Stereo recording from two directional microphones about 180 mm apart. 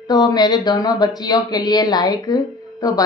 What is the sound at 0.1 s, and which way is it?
A woman's voice, 20° left (ahead or behind).